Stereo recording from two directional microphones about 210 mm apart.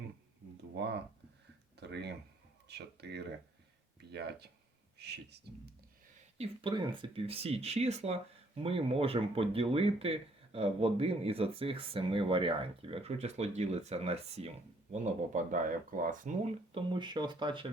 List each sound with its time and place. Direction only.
0.5 s a sound: 55° right (ahead or behind)
1.7 s speech: 50° right (ahead or behind)
6.3 s speech: 25° right (ahead or behind)
16.7 s speech: 20° right (ahead or behind)